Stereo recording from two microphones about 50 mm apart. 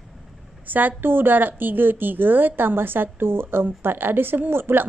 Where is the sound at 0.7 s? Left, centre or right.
Right.